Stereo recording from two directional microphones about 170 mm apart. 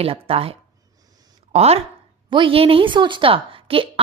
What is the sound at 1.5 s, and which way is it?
A woman's voice, 35° right (ahead or behind).